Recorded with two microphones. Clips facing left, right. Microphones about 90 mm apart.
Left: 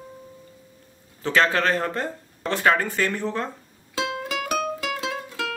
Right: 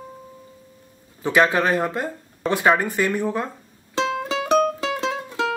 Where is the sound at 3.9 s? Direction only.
30° right (ahead or behind).